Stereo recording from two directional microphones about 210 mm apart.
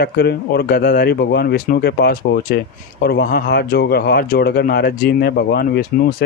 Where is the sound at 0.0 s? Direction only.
50° left (ahead or behind).